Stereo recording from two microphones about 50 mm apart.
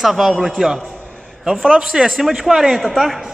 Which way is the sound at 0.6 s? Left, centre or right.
Centre.